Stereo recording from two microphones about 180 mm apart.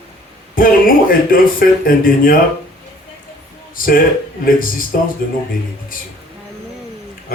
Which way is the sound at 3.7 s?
50° left (ahead or behind).